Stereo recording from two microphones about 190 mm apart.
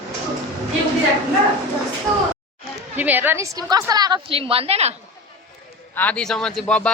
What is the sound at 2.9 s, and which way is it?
A woman's voice, 10° right (ahead or behind).